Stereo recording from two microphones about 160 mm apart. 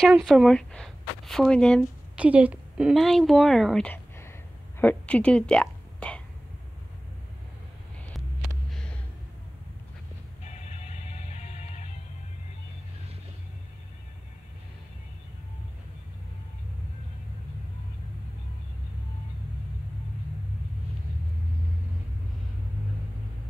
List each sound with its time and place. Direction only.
0.1 s speech: 5° right (ahead or behind)
1.8 s a woman's voice: 5° right (ahead or behind)
10.5 s music: 45° left (ahead or behind)